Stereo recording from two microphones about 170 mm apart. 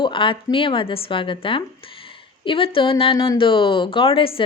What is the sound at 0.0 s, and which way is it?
A woman's voice, 30° left (ahead or behind).